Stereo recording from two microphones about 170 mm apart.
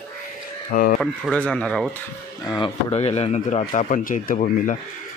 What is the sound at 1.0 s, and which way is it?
Speech, 5° left (ahead or behind).